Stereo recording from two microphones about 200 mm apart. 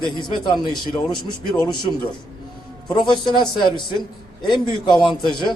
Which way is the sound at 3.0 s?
20° left (ahead or behind).